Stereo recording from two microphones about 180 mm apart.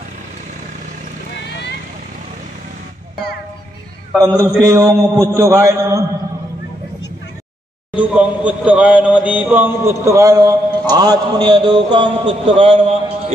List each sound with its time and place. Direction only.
4.2 s a man's voice: 15° right (ahead or behind)
7.9 s speech: 5° right (ahead or behind); by 12.9 s 30° right (ahead or behind)